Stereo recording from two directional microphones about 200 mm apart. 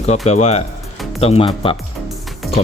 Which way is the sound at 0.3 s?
35° left (ahead or behind).